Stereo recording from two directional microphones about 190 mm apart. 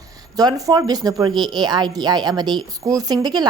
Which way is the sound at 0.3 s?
20° right (ahead or behind).